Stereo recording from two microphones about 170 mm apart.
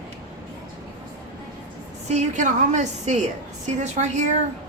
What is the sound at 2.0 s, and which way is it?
A woman's voice, 45° right (ahead or behind).